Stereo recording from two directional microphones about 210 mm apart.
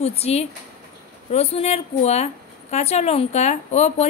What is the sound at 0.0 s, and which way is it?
A woman's voice, 30° left (ahead or behind).